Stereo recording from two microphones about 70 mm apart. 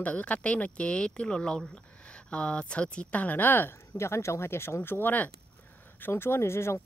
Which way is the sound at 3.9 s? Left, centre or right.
Left.